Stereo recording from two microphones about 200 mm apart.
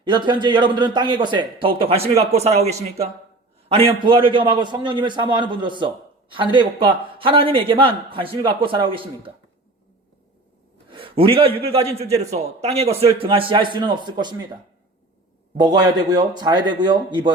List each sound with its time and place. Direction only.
0.0 s speech: 25° right (ahead or behind)
10.9 s speech: 25° right (ahead or behind)
15.5 s speech: 20° right (ahead or behind)